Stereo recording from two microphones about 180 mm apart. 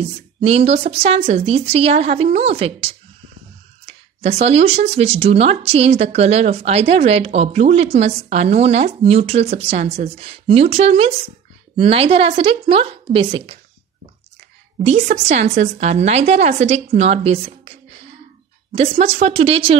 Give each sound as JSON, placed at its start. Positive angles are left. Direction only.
{"t": 0.4, "sound": "speech", "side_deg": -35}
{"t": 14.9, "sound": "speech", "side_deg": -40}